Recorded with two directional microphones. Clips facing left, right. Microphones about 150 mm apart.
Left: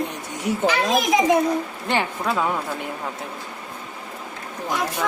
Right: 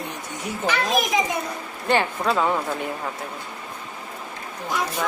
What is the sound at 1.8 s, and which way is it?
Speech, 15° left (ahead or behind).